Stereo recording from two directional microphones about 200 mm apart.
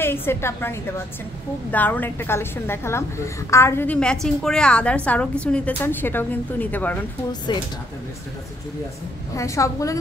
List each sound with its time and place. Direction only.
0.0 s a woman's voice: 10° left (ahead or behind)
9.3 s a woman's voice: 15° left (ahead or behind)